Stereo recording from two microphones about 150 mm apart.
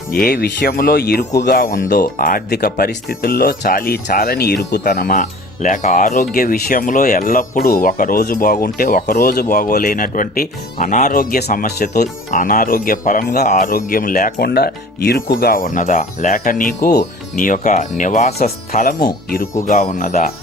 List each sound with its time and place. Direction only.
0.1 s speech: 75° left (ahead or behind)
1.5 s speech: 70° left (ahead or behind); by 12.0 s 90° left
12.3 s speech: 65° left (ahead or behind); by 15.2 s 90° left
15.4 s speech: 75° left (ahead or behind); by 18.4 s 50° left (ahead or behind)
19.3 s speech: 75° left (ahead or behind)
19.7 s speech: 55° left (ahead or behind)